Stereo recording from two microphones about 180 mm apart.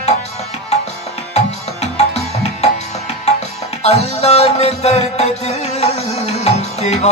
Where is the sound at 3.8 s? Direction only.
35° left (ahead or behind).